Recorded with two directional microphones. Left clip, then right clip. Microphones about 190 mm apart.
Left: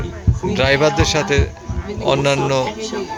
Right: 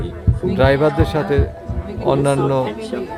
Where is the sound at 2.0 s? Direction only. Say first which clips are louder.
Even; 15° right (ahead or behind).